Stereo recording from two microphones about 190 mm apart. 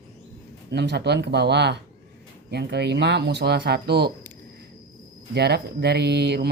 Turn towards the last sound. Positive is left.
turn(degrees=-60)  # may be behind; listen again after turning